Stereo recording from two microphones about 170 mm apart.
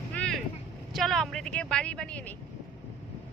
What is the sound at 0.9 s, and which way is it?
A woman's voice, centre (ahead or behind).